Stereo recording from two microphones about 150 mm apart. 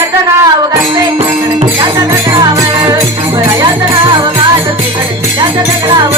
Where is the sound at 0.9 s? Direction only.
40° right (ahead or behind).